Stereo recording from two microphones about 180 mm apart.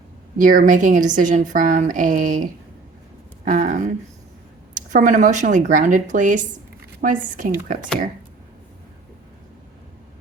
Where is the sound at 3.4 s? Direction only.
50° right (ahead or behind).